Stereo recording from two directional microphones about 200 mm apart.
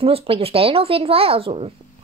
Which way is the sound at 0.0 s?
30° right (ahead or behind).